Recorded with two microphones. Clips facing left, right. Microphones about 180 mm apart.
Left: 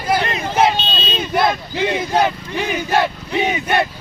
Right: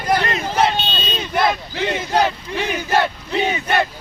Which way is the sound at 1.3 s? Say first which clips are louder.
Left 1 dB; 5° left (ahead or behind).